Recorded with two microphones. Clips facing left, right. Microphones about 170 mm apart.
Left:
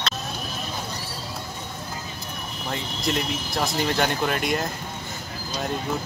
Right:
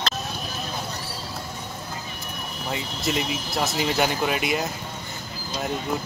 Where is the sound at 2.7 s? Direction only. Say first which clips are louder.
Even; 5° right (ahead or behind).